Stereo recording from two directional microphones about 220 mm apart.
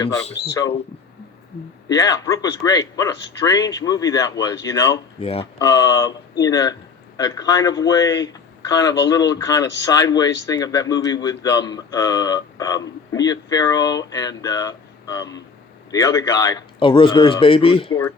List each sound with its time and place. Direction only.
0.5 s a man's voice: 15° left (ahead or behind)
1.9 s a man's voice: 15° left (ahead or behind)